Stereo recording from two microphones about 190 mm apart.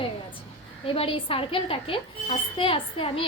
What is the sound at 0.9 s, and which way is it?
A woman's voice, 30° left (ahead or behind).